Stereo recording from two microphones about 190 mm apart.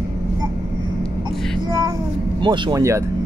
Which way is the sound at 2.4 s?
25° right (ahead or behind).